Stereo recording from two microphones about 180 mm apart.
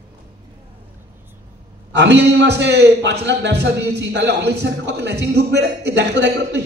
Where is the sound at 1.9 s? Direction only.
75° right (ahead or behind).